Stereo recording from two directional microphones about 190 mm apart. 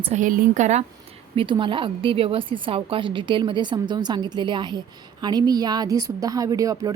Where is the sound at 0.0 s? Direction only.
40° right (ahead or behind).